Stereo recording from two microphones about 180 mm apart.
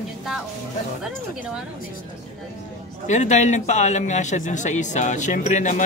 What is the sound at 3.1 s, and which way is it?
A man's voice, 40° left (ahead or behind).